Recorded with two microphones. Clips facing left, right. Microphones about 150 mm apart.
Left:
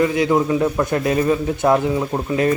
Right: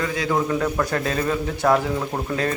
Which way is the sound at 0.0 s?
20° left (ahead or behind).